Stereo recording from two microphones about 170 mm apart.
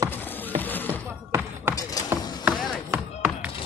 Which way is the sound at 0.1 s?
10° left (ahead or behind).